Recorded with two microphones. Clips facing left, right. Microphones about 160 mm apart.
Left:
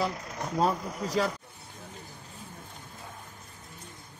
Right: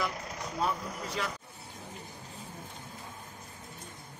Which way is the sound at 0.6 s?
40° left (ahead or behind).